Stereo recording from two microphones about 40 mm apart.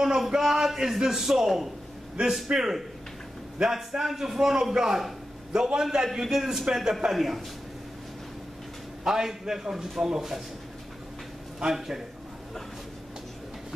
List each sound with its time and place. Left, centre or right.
0.3 s a man's voice: centre
9.0 s a man's voice: centre
11.6 s a man's voice: centre